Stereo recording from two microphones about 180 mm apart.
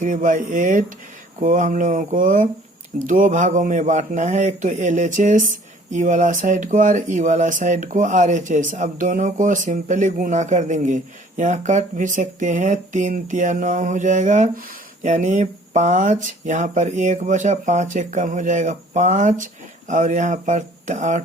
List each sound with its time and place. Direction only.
0.0 s speech: 45° right (ahead or behind)